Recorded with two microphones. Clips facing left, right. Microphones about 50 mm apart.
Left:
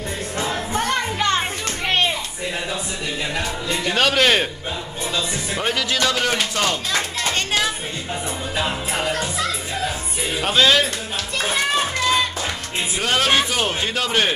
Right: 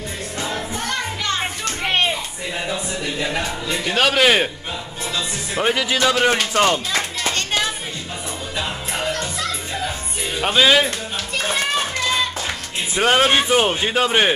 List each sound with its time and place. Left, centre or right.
1.9 s a sound: centre
2.7 s a sound: centre
3.6 s a man's voice: centre
5.5 s music: centre
6.5 s speech: right
6.9 s a sound: centre
8.5 s music: centre
10.4 s music: centre
11.3 s children playing: centre
12.9 s speech: right